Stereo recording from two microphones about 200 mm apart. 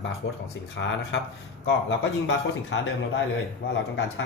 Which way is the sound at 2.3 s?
70° left (ahead or behind).